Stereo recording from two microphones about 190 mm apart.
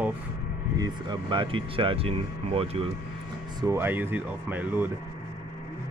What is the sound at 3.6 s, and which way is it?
Speech, 15° right (ahead or behind).